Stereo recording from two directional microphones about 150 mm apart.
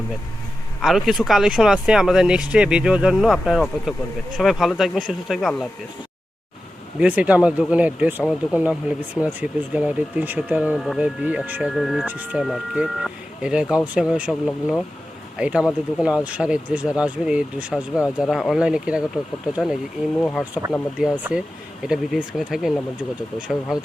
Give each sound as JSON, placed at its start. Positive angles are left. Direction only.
{"t": 0.8, "sound": "speech", "side_deg": 0}
{"t": 7.0, "sound": "speech", "side_deg": -10}
{"t": 12.0, "sound": "speech", "side_deg": -10}
{"t": 20.4, "sound": "speech", "side_deg": -20}
{"t": 21.0, "sound": "speech", "side_deg": -5}